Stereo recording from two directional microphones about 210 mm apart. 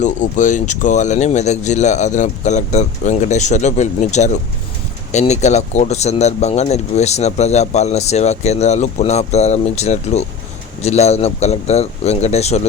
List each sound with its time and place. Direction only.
0.0 s speech: 35° left (ahead or behind)